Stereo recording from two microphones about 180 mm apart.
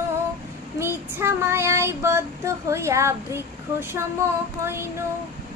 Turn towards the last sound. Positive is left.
turn(degrees=-15)  # may be behind; listen again after turning